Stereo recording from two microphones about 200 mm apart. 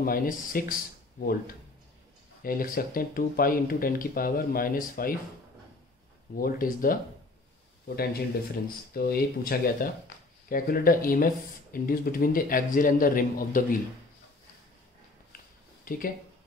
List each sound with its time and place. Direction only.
0.0 s speech: 45° left (ahead or behind)
2.4 s speech: 45° left (ahead or behind)
6.3 s speech: 45° left (ahead or behind)
15.8 s speech: 45° left (ahead or behind)